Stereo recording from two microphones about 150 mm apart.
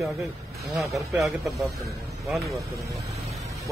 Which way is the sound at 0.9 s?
20° right (ahead or behind).